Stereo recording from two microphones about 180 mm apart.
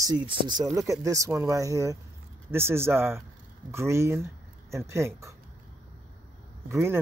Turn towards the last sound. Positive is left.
turn(degrees=-15)  # may be behind; listen again after turning